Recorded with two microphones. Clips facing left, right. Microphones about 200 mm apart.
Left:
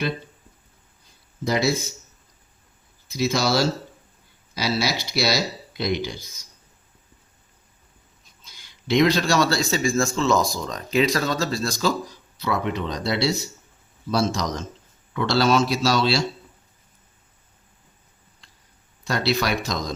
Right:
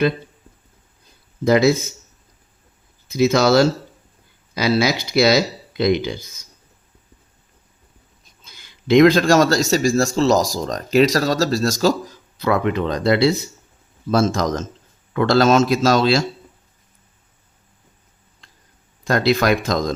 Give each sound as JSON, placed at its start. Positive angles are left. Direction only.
{"t": 1.5, "sound": "speech", "side_deg": -55}
{"t": 3.1, "sound": "speech", "side_deg": -55}
{"t": 9.0, "sound": "speech", "side_deg": -50}
{"t": 19.0, "sound": "speech", "side_deg": -50}